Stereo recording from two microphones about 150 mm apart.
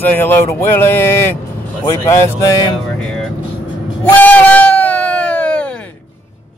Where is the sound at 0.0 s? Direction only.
10° left (ahead or behind).